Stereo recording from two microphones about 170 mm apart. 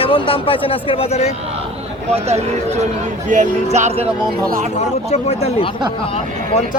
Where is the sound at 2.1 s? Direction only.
40° right (ahead or behind).